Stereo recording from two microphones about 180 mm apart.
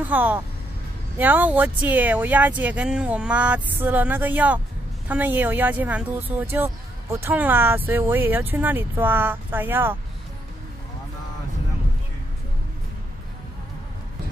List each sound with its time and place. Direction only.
0.0 s speech: 10° right (ahead or behind)